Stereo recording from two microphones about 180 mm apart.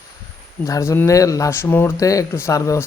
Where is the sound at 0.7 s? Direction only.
15° left (ahead or behind).